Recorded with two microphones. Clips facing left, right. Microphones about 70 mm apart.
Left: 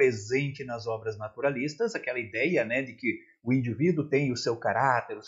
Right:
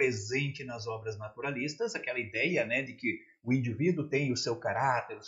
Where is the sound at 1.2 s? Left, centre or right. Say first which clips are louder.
Left 12 dB; left.